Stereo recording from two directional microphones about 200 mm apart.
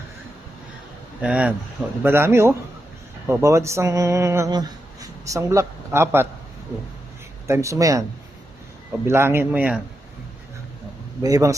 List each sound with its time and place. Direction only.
1.2 s speech: 5° right (ahead or behind)
7.4 s speech: 15° right (ahead or behind)
9.0 s speech: 10° right (ahead or behind)
11.2 s speech: 15° right (ahead or behind)